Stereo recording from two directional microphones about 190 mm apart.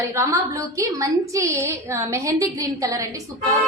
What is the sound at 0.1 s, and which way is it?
A woman's voice, 15° right (ahead or behind).